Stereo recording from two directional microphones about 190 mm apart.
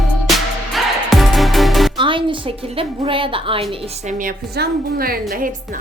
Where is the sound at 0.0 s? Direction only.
Centre (ahead or behind).